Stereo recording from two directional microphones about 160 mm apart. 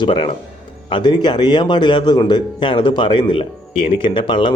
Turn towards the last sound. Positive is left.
turn(degrees=30)  # may be behind; listen again after turning